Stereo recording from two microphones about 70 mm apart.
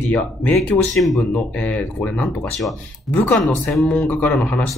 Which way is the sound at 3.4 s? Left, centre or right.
Centre.